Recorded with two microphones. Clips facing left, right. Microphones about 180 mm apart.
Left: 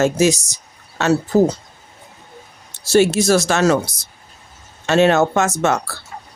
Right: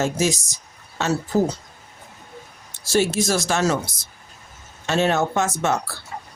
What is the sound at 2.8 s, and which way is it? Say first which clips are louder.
Speech: left 6 dB; 70° left (ahead or behind).